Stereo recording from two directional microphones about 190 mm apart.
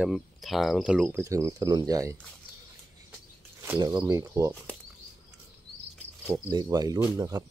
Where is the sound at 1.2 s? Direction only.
15° right (ahead or behind).